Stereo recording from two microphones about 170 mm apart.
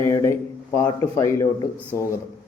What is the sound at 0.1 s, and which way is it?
Speech, 15° left (ahead or behind).